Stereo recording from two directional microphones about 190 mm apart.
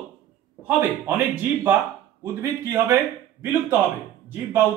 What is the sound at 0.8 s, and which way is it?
A man's voice, 10° right (ahead or behind).